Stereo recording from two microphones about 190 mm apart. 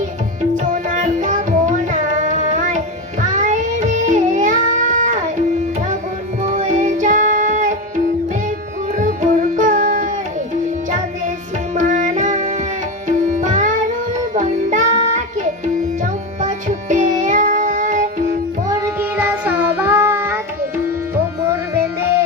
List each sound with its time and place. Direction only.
0.5 s music: 45° right (ahead or behind)
6.4 s music: 40° right (ahead or behind)
11.7 s music: 40° right (ahead or behind)
18.7 s child singing: 15° right (ahead or behind)